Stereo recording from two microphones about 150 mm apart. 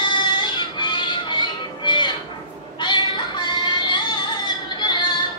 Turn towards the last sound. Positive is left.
turn(degrees=30)  # may be behind; listen again after turning